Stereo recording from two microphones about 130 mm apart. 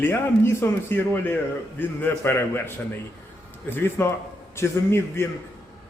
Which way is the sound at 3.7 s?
15° left (ahead or behind).